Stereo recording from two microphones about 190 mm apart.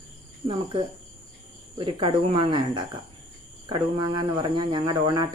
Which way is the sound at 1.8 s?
30° right (ahead or behind).